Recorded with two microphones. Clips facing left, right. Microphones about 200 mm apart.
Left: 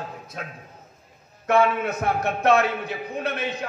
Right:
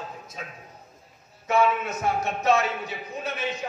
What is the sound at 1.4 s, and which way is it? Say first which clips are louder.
A man's voice: left 3 dB; 60° left (ahead or behind).